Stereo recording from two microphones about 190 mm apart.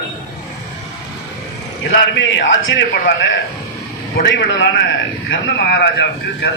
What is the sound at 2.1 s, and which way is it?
Speech, 70° left (ahead or behind).